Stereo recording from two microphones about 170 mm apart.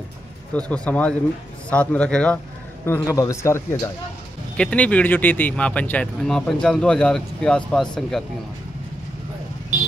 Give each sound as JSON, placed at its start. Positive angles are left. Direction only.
{"t": 0.6, "sound": "speech", "side_deg": 5}